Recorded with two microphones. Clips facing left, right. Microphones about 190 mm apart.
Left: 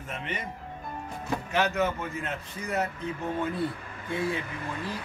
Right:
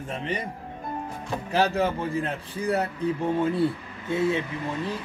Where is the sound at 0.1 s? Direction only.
35° right (ahead or behind).